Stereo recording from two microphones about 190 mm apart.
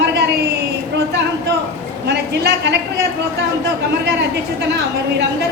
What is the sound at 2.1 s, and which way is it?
Speech, 65° right (ahead or behind).